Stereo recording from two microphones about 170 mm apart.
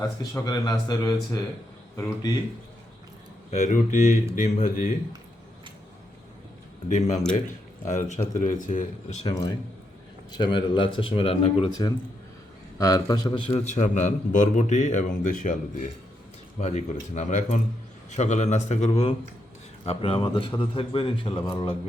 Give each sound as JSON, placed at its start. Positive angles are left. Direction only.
{"t": 0.0, "sound": "speech", "side_deg": 20}
{"t": 3.5, "sound": "a man's voice", "side_deg": 45}
{"t": 6.8, "sound": "a man's voice", "side_deg": 45}
{"t": 9.3, "sound": "speech", "side_deg": 20}
{"t": 12.8, "sound": "a man's voice", "side_deg": 20}
{"t": 21.3, "sound": "speech", "side_deg": 15}